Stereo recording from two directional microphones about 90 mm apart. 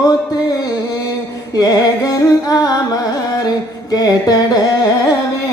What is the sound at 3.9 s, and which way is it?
Carnatic music, 45° left (ahead or behind).